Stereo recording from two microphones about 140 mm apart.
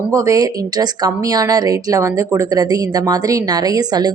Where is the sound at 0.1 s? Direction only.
25° right (ahead or behind).